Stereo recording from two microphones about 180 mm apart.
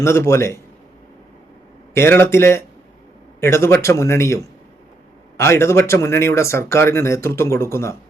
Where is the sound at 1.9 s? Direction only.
15° left (ahead or behind).